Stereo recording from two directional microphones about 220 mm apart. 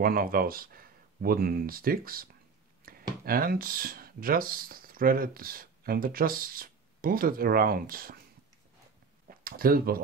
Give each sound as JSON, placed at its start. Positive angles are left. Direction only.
{"t": 0.0, "sound": "speech", "side_deg": -40}
{"t": 2.9, "sound": "a sound", "side_deg": -40}
{"t": 3.3, "sound": "speech", "side_deg": -40}
{"t": 9.3, "sound": "speech", "side_deg": -40}